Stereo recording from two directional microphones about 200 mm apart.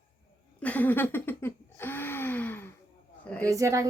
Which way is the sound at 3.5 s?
15° right (ahead or behind).